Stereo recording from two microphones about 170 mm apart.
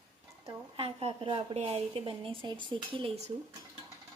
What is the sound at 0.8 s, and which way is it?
A woman's voice, 35° right (ahead or behind).